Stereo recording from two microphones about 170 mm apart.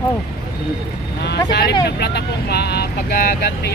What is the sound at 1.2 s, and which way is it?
Speech, 80° left.